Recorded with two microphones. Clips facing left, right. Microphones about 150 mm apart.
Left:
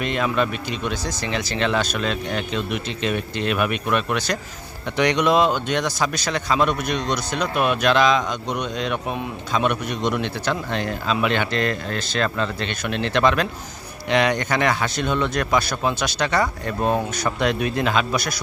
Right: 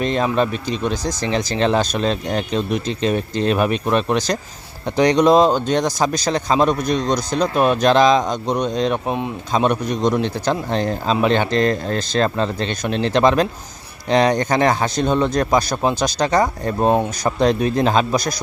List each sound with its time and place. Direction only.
0.0 s speech: 35° right (ahead or behind)